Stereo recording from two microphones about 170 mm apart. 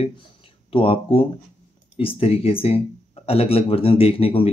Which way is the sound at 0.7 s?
30° left (ahead or behind).